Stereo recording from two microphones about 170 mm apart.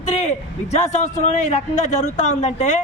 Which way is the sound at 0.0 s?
40° left (ahead or behind).